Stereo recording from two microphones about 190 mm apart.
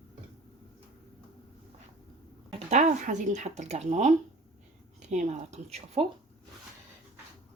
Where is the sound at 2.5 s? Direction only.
40° right (ahead or behind).